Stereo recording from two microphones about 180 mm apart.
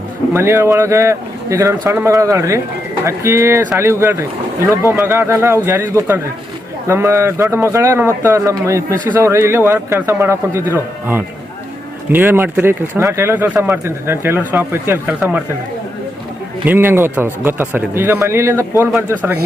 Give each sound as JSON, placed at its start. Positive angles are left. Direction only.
{"t": 0.3, "sound": "a man's voice", "side_deg": -15}
{"t": 16.6, "sound": "a man's voice", "side_deg": -10}